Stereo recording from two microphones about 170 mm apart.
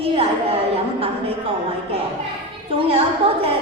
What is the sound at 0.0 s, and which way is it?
Speech, 35° right (ahead or behind).